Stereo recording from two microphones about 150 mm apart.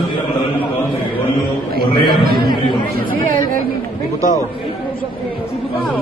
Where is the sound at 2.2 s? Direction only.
80° right.